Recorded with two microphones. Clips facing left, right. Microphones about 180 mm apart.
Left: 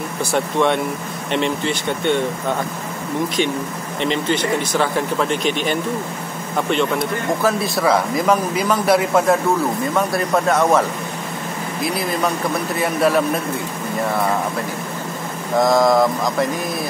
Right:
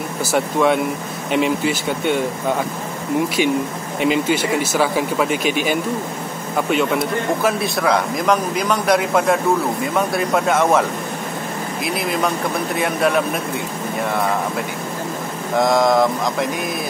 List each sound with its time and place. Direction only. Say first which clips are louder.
0.2 s speech: right 1 dB; 5° right (ahead or behind)
4.0 s speech: right 2 dB; 10° right (ahead or behind)
15.6 s speech: left 1 dB; centre (ahead or behind)